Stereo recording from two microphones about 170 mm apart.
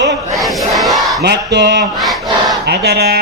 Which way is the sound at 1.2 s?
90° right.